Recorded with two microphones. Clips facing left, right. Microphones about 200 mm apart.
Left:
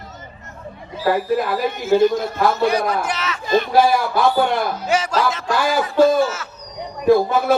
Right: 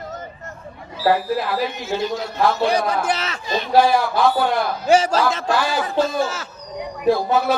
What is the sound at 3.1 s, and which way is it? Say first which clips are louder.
Speech: right 2 dB; 30° right (ahead or behind).